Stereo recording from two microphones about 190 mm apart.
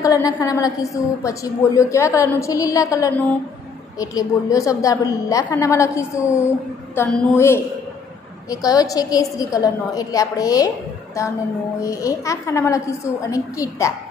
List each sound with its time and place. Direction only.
0.0 s a woman's voice: 20° left (ahead or behind)
7.0 s a woman's voice: 5° left (ahead or behind)
7.3 s a woman's voice: 15° left (ahead or behind)
11.8 s a woman's voice: 15° left (ahead or behind)